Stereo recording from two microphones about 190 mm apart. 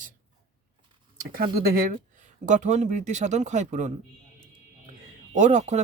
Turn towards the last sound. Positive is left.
turn(degrees=-40)  # may be behind; listen again after turning